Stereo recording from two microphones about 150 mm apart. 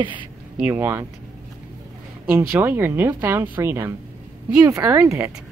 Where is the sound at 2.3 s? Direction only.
15° right (ahead or behind).